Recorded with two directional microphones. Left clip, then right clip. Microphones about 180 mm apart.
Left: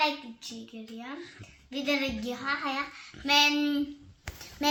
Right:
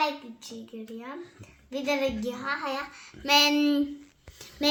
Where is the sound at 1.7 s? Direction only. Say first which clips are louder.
Right 2 dB; 55° right (ahead or behind).